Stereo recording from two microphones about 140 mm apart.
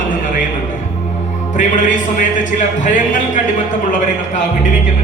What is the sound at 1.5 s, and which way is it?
A man's voice, 65° left (ahead or behind).